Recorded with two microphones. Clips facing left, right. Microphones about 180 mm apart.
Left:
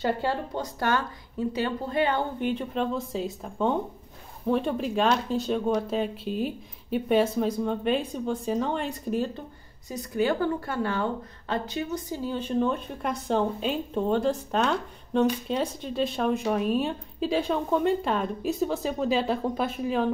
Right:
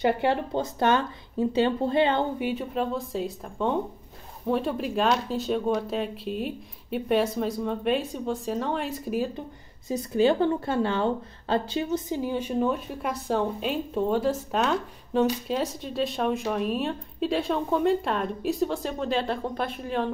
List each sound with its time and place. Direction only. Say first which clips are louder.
0.0 s speech: right 3 dB; 20° right (ahead or behind)
2.3 s a woman's voice: even; 5° right (ahead or behind)
9.8 s a woman's voice: right 4 dB; 25° right (ahead or behind); by 20.1 s centre (ahead or behind)